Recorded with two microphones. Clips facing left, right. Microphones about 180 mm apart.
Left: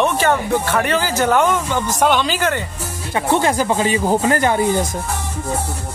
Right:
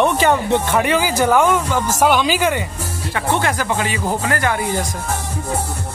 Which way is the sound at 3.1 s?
20° left (ahead or behind).